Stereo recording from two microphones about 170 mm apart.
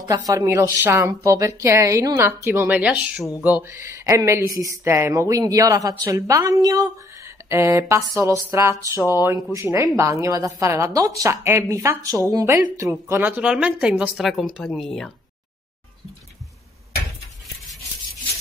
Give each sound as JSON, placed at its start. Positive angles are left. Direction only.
{"t": 0.1, "sound": "speech", "side_deg": -20}